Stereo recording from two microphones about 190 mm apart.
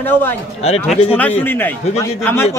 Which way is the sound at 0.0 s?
10° left (ahead or behind).